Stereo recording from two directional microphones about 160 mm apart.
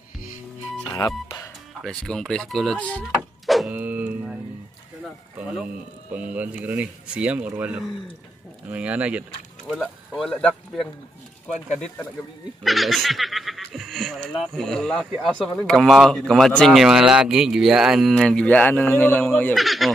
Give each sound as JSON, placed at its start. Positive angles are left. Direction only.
{"t": 0.9, "sound": "speech", "side_deg": 20}
{"t": 1.8, "sound": "speech", "side_deg": 5}
{"t": 3.4, "sound": "a sound", "side_deg": 0}
{"t": 3.7, "sound": "speech", "side_deg": -10}
{"t": 6.1, "sound": "speech", "side_deg": -10}
{"t": 9.8, "sound": "speech", "side_deg": 5}
{"t": 12.6, "sound": "speech", "side_deg": 0}
{"t": 19.5, "sound": "speech", "side_deg": 0}